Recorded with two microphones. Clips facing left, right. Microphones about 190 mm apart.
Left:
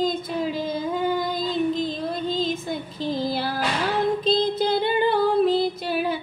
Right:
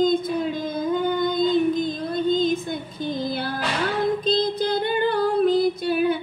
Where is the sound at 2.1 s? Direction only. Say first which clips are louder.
Right 4 dB; 5° left (ahead or behind).